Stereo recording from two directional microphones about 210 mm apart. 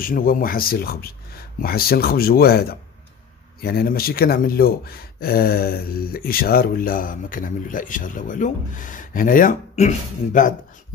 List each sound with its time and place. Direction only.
0.0 s speech: 45° left (ahead or behind)